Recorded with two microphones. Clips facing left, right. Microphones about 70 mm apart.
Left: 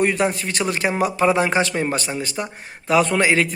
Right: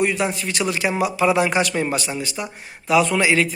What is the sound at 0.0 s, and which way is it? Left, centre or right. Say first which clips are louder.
A man's voice: left 2 dB; left.